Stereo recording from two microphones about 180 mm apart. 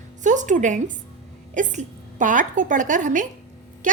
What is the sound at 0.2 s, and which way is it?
A woman's voice, 45° right (ahead or behind).